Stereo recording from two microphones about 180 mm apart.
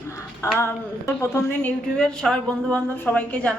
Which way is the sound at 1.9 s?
5° left (ahead or behind).